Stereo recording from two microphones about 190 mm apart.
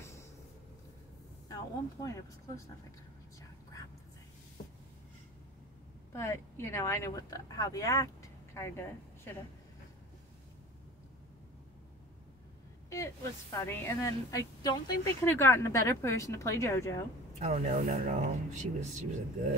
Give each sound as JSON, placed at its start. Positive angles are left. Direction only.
{"t": 0.0, "sound": "a sound", "side_deg": 15}
{"t": 1.5, "sound": "a woman's voice", "side_deg": 20}
{"t": 6.1, "sound": "speech", "side_deg": 15}
{"t": 12.9, "sound": "a woman's voice", "side_deg": 15}
{"t": 17.4, "sound": "speech", "side_deg": -35}